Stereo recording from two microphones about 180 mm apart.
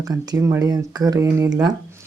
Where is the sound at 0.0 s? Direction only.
20° right (ahead or behind).